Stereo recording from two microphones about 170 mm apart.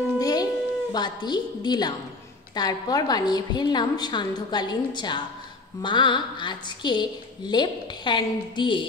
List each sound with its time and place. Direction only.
0.2 s music: 20° left (ahead or behind)
0.9 s a woman's voice: 25° left (ahead or behind)